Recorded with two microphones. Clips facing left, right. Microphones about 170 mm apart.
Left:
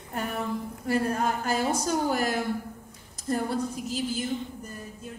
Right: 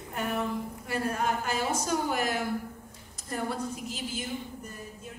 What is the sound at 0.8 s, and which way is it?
A woman's voice, 40° left (ahead or behind).